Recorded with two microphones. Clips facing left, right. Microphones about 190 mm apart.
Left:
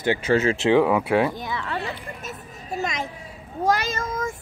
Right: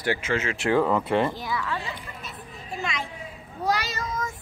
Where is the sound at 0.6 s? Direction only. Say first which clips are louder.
Left 2 dB; 20° left (ahead or behind).